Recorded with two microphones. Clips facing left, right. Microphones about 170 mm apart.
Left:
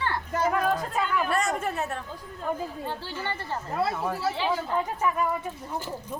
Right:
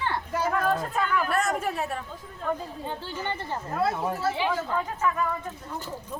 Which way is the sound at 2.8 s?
15° right (ahead or behind).